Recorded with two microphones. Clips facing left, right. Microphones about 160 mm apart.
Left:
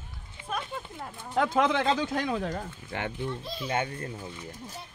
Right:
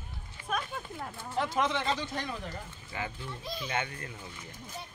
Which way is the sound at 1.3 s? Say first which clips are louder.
Left 6 dB; 90° left.